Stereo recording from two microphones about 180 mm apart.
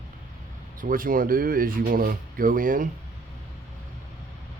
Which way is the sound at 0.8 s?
50° right (ahead or behind).